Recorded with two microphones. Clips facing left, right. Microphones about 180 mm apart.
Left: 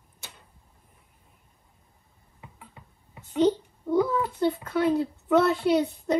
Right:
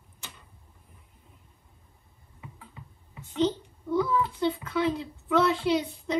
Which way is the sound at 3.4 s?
50° left (ahead or behind).